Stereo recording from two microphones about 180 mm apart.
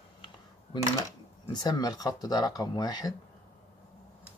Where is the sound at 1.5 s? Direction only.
20° left (ahead or behind).